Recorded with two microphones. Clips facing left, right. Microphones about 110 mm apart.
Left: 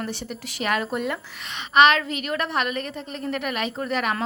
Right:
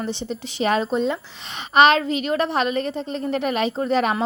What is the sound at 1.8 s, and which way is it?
A woman's voice, 35° right (ahead or behind).